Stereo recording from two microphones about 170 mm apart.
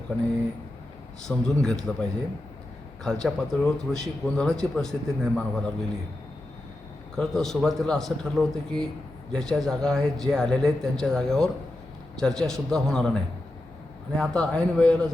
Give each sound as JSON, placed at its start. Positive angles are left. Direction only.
{"t": 1.3, "sound": "speech", "side_deg": 5}
{"t": 7.2, "sound": "speech", "side_deg": 0}